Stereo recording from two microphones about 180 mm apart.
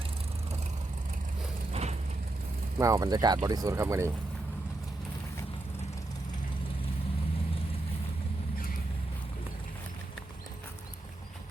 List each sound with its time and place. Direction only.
1.7 s vehicle: 35° right (ahead or behind)
2.7 s speech: 20° right (ahead or behind)